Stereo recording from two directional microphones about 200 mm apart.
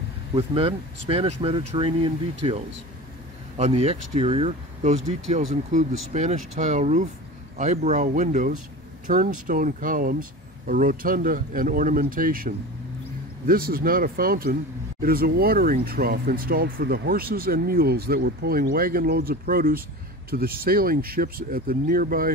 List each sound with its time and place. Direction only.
0.3 s a man's voice: 30° right (ahead or behind); by 22.3 s 45° right (ahead or behind)